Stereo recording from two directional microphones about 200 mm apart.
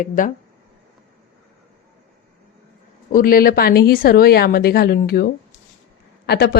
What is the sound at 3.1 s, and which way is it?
Speech, 45° left (ahead or behind).